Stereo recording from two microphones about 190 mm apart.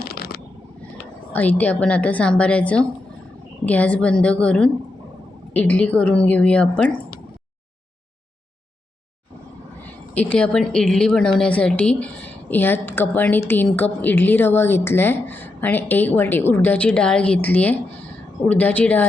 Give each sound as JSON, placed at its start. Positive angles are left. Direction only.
{"t": 0.0, "sound": "a sound", "side_deg": 55}
{"t": 1.3, "sound": "a woman's voice", "side_deg": 10}
{"t": 10.2, "sound": "a woman's voice", "side_deg": 5}